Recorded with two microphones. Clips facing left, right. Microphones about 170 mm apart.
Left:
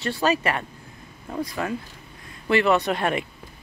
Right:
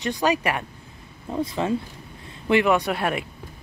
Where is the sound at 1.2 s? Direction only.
25° right (ahead or behind).